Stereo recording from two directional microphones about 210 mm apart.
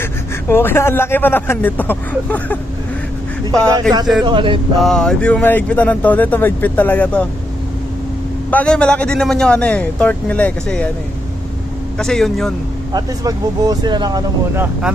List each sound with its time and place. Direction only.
0.0 s a man's voice: 10° left (ahead or behind)
4.2 s speech: 20° right (ahead or behind)
4.8 s speech: centre (ahead or behind)
8.4 s a man's voice: 5° left (ahead or behind)
11.9 s a man's voice: centre (ahead or behind)
12.9 s speech: 15° right (ahead or behind)